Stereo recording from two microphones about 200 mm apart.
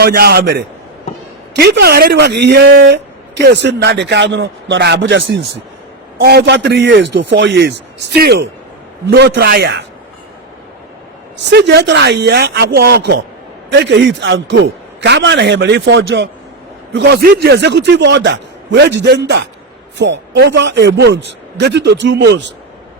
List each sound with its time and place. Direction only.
0.0 s a man's voice: 50° right (ahead or behind)
11.4 s speech: 60° right (ahead or behind)